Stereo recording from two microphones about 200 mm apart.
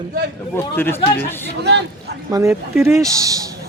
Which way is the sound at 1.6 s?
55° right (ahead or behind).